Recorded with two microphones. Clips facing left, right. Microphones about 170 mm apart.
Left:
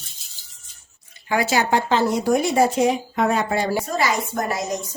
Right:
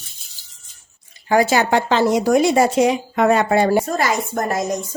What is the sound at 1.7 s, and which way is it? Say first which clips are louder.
Speech: right 3 dB; 90° right.